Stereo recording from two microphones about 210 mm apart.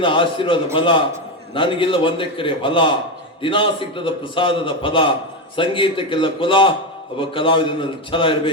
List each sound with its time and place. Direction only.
0.0 s a man's voice: 25° left (ahead or behind)